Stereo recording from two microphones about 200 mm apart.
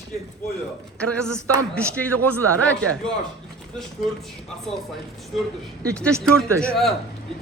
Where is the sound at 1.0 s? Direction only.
5° left (ahead or behind).